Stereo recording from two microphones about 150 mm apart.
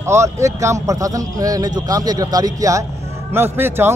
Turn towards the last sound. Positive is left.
turn(degrees=-15)  # may be behind; listen again after turning